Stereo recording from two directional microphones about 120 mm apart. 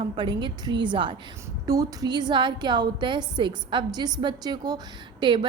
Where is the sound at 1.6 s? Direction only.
30° right (ahead or behind).